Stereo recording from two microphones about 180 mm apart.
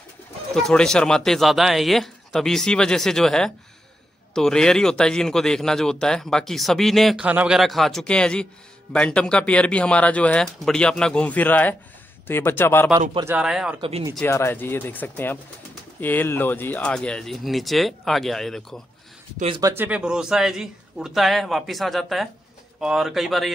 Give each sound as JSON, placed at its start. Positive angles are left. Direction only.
{"t": 0.6, "sound": "speech", "side_deg": 5}
{"t": 13.2, "sound": "speech", "side_deg": -10}
{"t": 13.7, "sound": "speech", "side_deg": -35}
{"t": 14.2, "sound": "speech", "side_deg": 15}
{"t": 19.3, "sound": "speech", "side_deg": -30}
{"t": 19.6, "sound": "speech", "side_deg": -10}